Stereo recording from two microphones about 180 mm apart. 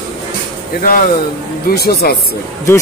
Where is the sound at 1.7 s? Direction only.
55° left (ahead or behind).